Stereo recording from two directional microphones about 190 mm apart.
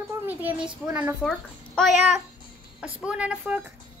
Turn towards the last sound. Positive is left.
turn(degrees=-5)  # may be behind; listen again after turning